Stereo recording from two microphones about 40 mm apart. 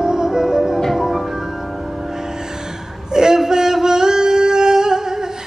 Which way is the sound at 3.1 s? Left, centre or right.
Centre.